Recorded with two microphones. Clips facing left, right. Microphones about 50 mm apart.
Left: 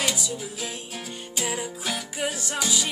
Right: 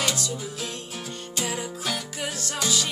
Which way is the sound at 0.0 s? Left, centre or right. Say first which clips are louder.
Even; centre.